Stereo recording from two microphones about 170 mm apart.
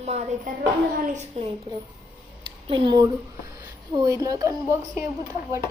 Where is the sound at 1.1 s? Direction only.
45° right (ahead or behind).